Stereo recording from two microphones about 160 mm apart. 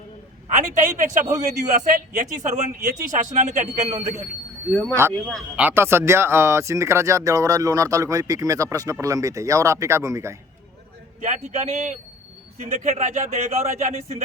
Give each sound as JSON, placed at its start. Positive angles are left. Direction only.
{"t": 0.4, "sound": "a man's voice", "side_deg": -55}
{"t": 4.7, "sound": "speech", "side_deg": 10}
{"t": 4.9, "sound": "speech", "side_deg": -15}
{"t": 11.2, "sound": "a man's voice", "side_deg": -50}